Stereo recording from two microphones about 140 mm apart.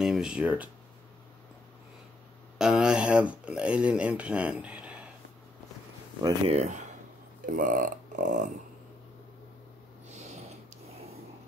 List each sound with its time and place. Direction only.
0.0 s speech: 5° right (ahead or behind)
2.6 s speech: 5° right (ahead or behind)
6.4 s speech: 50° right (ahead or behind)
7.4 s speech: 75° right (ahead or behind)